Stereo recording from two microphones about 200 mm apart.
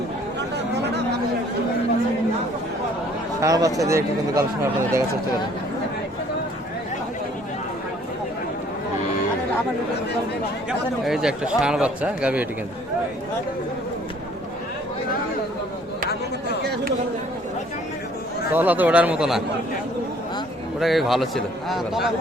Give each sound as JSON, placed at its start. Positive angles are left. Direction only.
{"t": 3.4, "sound": "speech", "side_deg": -15}
{"t": 10.7, "sound": "a man's voice", "side_deg": 0}
{"t": 18.5, "sound": "speech", "side_deg": -10}
{"t": 20.7, "sound": "a man's voice", "side_deg": 0}